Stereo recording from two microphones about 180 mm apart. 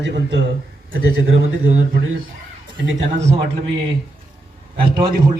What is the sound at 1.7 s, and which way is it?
Speech, 45° right (ahead or behind).